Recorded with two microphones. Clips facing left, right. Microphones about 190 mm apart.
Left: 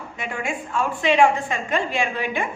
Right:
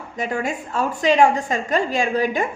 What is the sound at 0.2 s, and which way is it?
A woman's voice, 40° right (ahead or behind).